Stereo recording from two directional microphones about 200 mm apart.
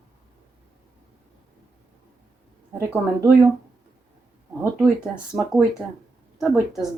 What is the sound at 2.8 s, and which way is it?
Speech, 10° right (ahead or behind).